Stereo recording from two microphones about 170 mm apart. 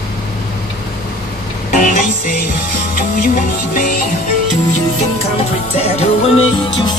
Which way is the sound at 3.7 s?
55° left (ahead or behind).